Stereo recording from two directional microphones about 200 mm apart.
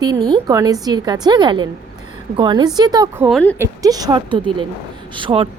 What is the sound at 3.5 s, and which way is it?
A woman's voice, 15° right (ahead or behind).